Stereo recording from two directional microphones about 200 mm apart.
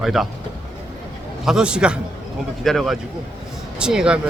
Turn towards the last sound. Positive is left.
turn(degrees=-5)  # may be behind; listen again after turning